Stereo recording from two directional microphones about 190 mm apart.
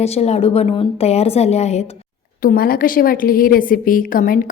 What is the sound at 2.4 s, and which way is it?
A woman's voice, 50° left (ahead or behind).